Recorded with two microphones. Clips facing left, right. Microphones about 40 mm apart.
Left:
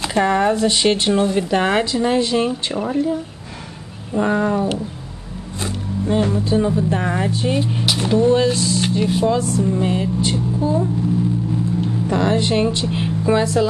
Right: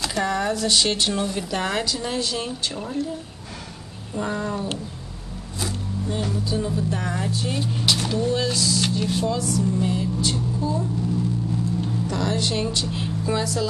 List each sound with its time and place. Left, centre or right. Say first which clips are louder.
0.0 s speech: left 7 dB; left
8.8 s speech: left 6 dB; centre